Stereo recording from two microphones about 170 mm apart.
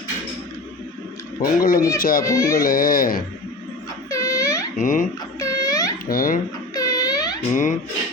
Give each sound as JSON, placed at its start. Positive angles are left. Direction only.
{"t": 1.4, "sound": "speech", "side_deg": 55}
{"t": 2.2, "sound": "speech", "side_deg": 15}
{"t": 2.6, "sound": "speech", "side_deg": 55}
{"t": 4.1, "sound": "a sound", "side_deg": 20}
{"t": 4.8, "sound": "speech", "side_deg": 50}
{"t": 5.4, "sound": "babbling", "side_deg": 20}
{"t": 6.1, "sound": "speech", "side_deg": 55}
{"t": 6.7, "sound": "wail", "side_deg": 20}
{"t": 7.5, "sound": "speech", "side_deg": 45}